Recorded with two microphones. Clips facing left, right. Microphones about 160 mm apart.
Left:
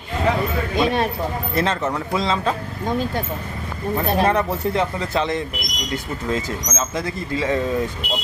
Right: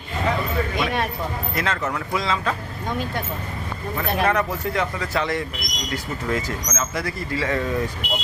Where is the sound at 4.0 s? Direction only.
30° left (ahead or behind).